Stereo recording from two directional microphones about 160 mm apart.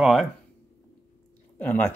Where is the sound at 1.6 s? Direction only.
10° left (ahead or behind).